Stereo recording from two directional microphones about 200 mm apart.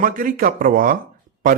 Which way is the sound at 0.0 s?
45° right (ahead or behind).